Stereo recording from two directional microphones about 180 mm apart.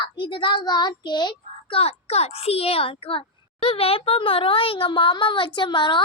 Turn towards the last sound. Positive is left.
turn(degrees=25)  # may be behind; listen again after turning